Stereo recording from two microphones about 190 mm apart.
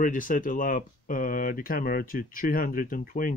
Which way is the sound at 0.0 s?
45° left (ahead or behind).